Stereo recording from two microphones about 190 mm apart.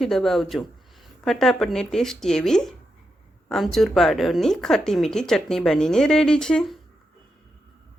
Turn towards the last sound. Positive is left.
turn(degrees=5)  # may be behind; listen again after turning